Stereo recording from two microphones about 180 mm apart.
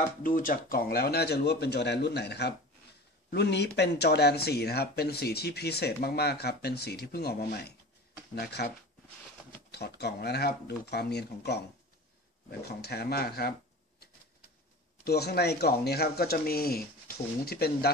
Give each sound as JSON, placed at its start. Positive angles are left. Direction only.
{"t": 0.2, "sound": "speech", "side_deg": 50}
{"t": 9.7, "sound": "speech", "side_deg": 65}
{"t": 15.0, "sound": "speech", "side_deg": 65}